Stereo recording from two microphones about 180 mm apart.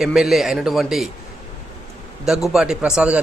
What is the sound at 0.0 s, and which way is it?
Speech, centre (ahead or behind).